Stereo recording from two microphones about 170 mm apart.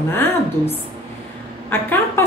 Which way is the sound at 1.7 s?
10° left (ahead or behind).